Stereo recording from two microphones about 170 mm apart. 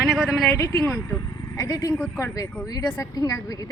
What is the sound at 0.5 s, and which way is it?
A woman's voice, 20° left (ahead or behind).